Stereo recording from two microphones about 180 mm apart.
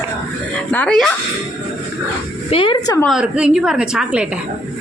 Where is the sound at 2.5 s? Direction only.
30° left (ahead or behind).